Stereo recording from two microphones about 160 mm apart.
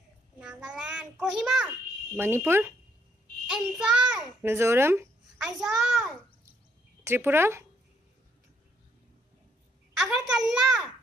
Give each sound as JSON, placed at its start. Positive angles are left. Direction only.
{"t": 0.4, "sound": "a sound", "side_deg": -5}
{"t": 2.1, "sound": "speech", "side_deg": -15}
{"t": 3.4, "sound": "a child's voice", "side_deg": -5}
{"t": 5.5, "sound": "a woman's voice", "side_deg": 0}
{"t": 7.1, "sound": "speech", "side_deg": -15}
{"t": 10.0, "sound": "a woman's voice", "side_deg": -5}